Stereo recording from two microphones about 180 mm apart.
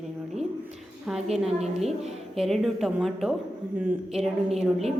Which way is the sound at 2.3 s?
Centre (ahead or behind).